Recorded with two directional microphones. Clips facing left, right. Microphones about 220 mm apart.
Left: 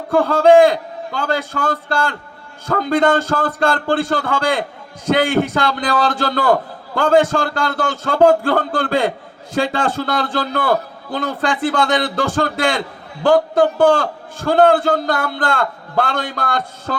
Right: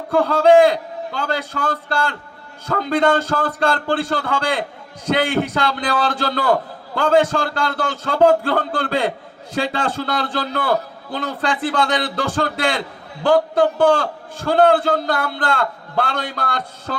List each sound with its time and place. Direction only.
0.1 s a man's voice: 50° left (ahead or behind)